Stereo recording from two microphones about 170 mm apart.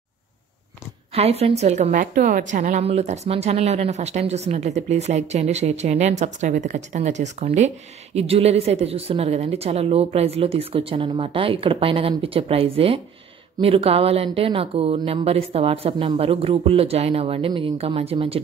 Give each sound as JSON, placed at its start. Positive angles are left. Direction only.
{"t": 1.1, "sound": "a woman's voice", "side_deg": -35}